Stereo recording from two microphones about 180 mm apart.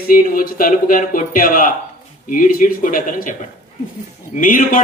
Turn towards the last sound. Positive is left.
turn(degrees=50)  # may be behind; listen again after turning